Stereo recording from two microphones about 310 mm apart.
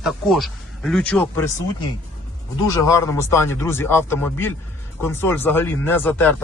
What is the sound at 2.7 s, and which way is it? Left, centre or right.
Speech, centre.